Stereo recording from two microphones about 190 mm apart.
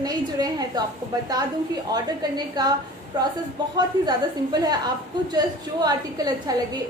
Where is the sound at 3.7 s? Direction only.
20° right (ahead or behind).